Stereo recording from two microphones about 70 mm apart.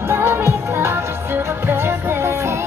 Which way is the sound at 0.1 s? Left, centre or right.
Right.